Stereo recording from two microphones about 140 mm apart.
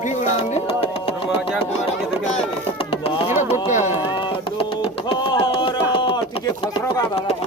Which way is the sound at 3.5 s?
60° left (ahead or behind).